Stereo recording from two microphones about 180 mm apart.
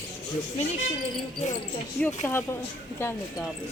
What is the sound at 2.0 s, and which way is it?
Speech, 10° left (ahead or behind).